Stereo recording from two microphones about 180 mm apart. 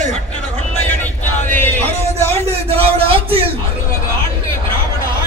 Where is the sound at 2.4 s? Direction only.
35° right (ahead or behind).